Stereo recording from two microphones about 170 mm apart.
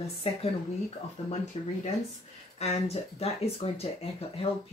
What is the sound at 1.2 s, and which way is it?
Speech, 45° left (ahead or behind).